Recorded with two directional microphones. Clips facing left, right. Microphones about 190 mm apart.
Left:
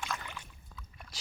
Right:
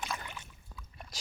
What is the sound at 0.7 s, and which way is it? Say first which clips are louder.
Boat: right 1 dB; 10° right (ahead or behind).